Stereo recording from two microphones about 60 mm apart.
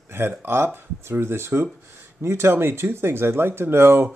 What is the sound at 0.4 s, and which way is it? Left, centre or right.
Speech, right.